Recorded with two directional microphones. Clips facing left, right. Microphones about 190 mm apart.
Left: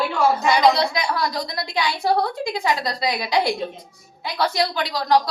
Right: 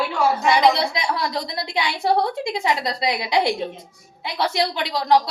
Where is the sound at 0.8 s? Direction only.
25° right (ahead or behind).